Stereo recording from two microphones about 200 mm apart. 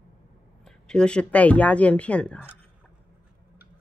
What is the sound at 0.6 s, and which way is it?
Speech, 5° left (ahead or behind).